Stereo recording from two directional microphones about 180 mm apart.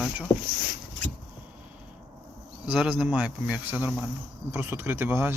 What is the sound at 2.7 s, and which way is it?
Speech, 5° right (ahead or behind).